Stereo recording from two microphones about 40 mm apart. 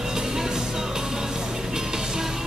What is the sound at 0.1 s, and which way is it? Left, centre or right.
Music, centre.